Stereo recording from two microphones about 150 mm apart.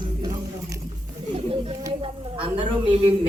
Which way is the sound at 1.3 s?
45° right (ahead or behind).